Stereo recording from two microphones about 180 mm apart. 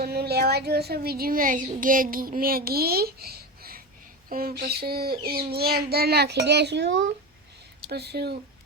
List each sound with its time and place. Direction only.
0.0 s a woman's voice: 60° right (ahead or behind)